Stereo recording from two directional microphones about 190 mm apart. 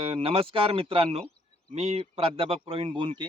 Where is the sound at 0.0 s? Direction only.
30° right (ahead or behind).